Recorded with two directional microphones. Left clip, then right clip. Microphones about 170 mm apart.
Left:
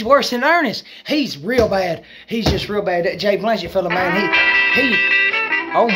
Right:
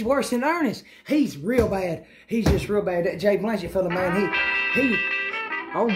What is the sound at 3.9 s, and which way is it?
Music, 40° left (ahead or behind).